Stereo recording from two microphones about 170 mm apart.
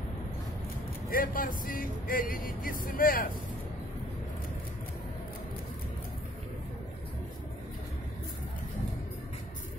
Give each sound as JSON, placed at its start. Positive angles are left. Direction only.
{"t": 1.1, "sound": "speech", "side_deg": 55}